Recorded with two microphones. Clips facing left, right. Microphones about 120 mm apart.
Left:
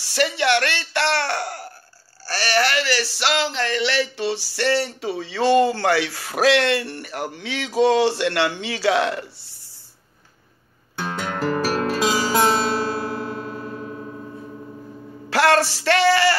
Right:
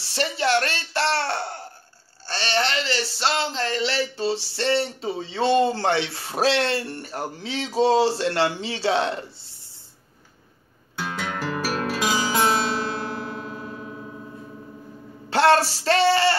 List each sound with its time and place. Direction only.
0.0 s speech: 30° right (ahead or behind)
5.0 s speech: 75° left (ahead or behind)
5.3 s speech: 30° right (ahead or behind)
11.6 s music: centre (ahead or behind)
15.2 s a sound: 30° right (ahead or behind)
15.8 s speech: 30° right (ahead or behind)